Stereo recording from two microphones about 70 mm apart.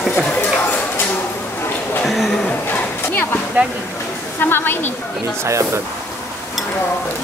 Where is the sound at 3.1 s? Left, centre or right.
Left.